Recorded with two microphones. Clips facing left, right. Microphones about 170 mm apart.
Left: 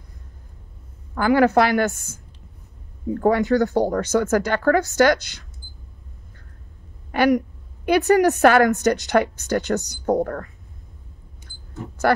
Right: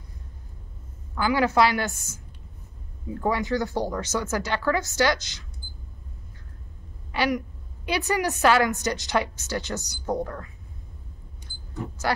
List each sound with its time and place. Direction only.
1.1 s a woman's voice: 50° left (ahead or behind)
7.1 s a woman's voice: 50° left (ahead or behind)